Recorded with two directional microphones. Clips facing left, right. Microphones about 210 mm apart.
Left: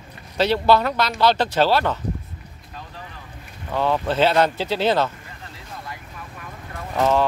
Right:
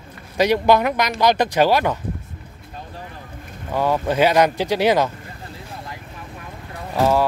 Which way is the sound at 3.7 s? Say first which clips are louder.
Right 2 dB; 10° right (ahead or behind).